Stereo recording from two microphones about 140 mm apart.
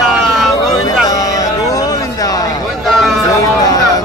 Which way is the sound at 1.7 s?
25° left (ahead or behind).